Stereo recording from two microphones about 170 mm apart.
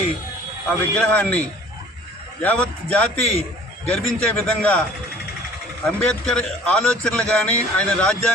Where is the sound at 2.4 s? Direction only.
10° left (ahead or behind).